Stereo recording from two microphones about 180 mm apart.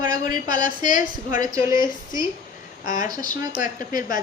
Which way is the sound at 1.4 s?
20° right (ahead or behind).